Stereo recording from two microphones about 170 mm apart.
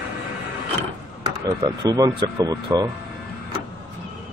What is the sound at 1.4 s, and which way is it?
Speech, 20° right (ahead or behind).